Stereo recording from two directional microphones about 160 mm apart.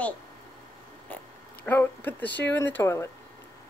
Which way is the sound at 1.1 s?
10° left (ahead or behind).